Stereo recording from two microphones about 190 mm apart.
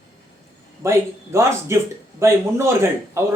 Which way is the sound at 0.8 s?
15° right (ahead or behind).